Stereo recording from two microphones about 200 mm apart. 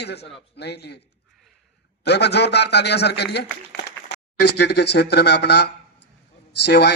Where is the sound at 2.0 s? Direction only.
55° left (ahead or behind).